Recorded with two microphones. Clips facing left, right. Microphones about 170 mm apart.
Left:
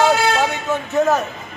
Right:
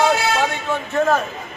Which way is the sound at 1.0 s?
10° left (ahead or behind).